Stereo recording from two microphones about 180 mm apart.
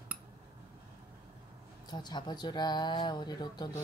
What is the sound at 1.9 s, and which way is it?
Speech, 25° left (ahead or behind).